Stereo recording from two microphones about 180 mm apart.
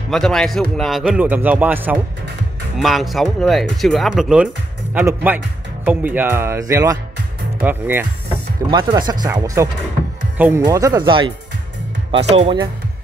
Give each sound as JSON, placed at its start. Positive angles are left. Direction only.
{"t": 0.1, "sound": "speech", "side_deg": 5}
{"t": 8.6, "sound": "speech", "side_deg": -25}
{"t": 10.6, "sound": "speech", "side_deg": -20}
{"t": 12.3, "sound": "speech", "side_deg": -35}